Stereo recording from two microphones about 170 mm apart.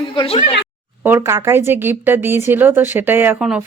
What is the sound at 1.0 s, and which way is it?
Speech, 15° right (ahead or behind).